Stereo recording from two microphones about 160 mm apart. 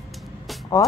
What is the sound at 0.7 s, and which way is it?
Speech, 20° left (ahead or behind).